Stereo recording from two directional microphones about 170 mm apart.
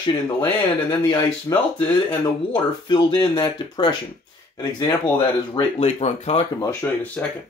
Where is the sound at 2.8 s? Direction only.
25° left (ahead or behind).